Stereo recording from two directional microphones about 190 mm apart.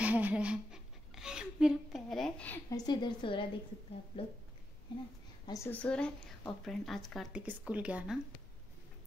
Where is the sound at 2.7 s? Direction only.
25° left (ahead or behind).